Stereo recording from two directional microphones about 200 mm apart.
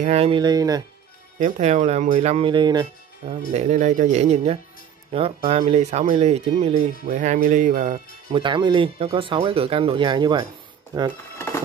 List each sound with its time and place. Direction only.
0.0 s speech: 30° right (ahead or behind)
1.4 s speech: 35° right (ahead or behind)
3.5 s speech: 35° right (ahead or behind)
8.3 s speech: 25° right (ahead or behind)